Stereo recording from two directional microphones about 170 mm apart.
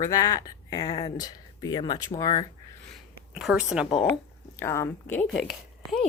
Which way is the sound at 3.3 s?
5° right (ahead or behind).